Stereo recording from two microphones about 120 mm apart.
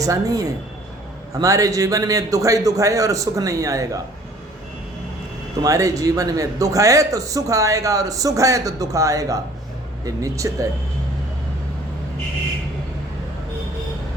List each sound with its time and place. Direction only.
0.0 s a man's voice: 30° right (ahead or behind)
5.6 s a man's voice: 25° right (ahead or behind)